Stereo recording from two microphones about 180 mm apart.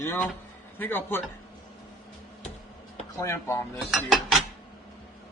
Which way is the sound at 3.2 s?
15° left (ahead or behind).